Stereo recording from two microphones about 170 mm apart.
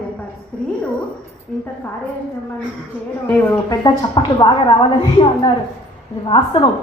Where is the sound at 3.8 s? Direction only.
25° left (ahead or behind).